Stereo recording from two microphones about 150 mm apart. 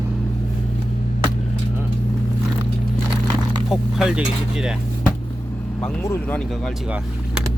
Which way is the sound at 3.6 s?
Centre (ahead or behind).